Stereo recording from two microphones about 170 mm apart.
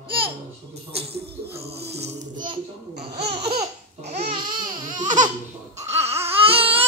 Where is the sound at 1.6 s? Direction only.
35° right (ahead or behind).